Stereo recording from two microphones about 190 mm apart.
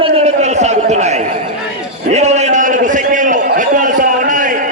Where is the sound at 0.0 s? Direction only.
35° right (ahead or behind).